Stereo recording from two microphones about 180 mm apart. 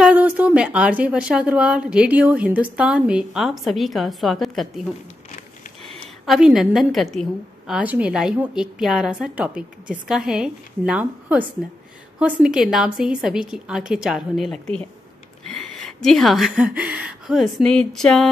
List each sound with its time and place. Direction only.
0.0 s a woman's voice: 10° right (ahead or behind)
6.2 s a woman's voice: centre (ahead or behind)